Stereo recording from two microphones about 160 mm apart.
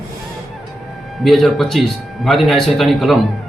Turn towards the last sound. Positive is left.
turn(degrees=0)  # may be behind; listen again after turning